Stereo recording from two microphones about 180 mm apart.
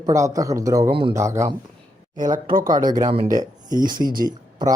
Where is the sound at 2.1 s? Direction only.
45° right (ahead or behind).